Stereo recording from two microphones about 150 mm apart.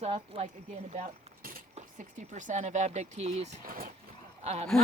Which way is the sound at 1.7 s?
55° right (ahead or behind).